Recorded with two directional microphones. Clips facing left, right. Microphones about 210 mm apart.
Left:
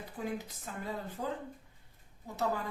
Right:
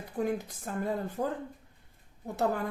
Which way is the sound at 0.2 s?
50° right (ahead or behind).